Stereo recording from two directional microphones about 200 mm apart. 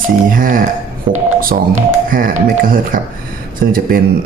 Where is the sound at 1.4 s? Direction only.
45° right (ahead or behind).